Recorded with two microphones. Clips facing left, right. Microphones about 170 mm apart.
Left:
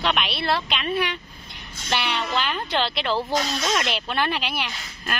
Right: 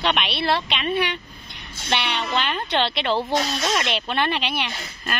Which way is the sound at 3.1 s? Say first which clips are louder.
Right 1 dB; 25° right (ahead or behind).